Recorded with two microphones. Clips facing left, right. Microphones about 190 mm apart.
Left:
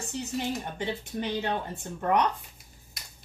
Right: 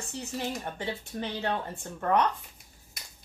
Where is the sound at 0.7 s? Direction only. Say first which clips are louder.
Left 2 dB; 20° left (ahead or behind).